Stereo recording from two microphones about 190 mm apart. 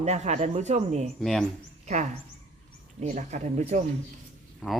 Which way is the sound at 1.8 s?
40° right (ahead or behind).